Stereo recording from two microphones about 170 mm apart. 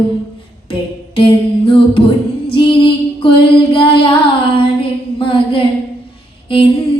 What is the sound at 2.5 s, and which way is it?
Female singing, 30° left (ahead or behind).